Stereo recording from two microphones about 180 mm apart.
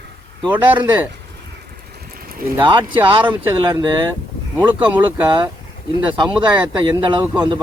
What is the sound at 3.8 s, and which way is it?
Speech, 25° right (ahead or behind).